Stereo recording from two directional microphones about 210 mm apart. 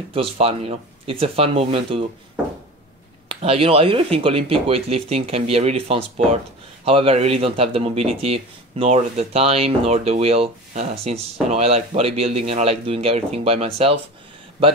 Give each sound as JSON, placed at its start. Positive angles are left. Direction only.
{"t": 0.1, "sound": "speech", "side_deg": -25}
{"t": 3.3, "sound": "speech", "side_deg": -25}